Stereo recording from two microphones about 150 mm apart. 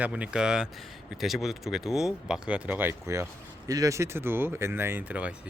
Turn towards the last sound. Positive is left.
turn(degrees=-10)  # may be behind; listen again after turning